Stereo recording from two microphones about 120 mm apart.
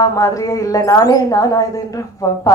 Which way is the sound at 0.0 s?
25° left (ahead or behind).